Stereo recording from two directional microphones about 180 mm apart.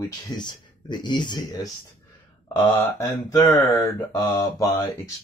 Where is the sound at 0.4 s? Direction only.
25° left (ahead or behind).